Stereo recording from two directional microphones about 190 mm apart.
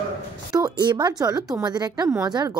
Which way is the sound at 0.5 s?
20° right (ahead or behind).